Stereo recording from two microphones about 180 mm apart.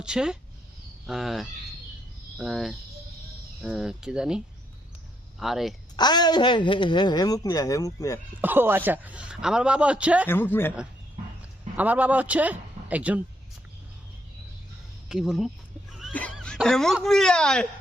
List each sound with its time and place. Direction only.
0.0 s speech: 5° right (ahead or behind)
6.0 s speech: 25° left (ahead or behind)
8.4 s a man's voice: 10° right (ahead or behind)
10.2 s speech: 10° left (ahead or behind)
11.8 s a man's voice: 10° right (ahead or behind)
15.1 s speech: centre (ahead or behind)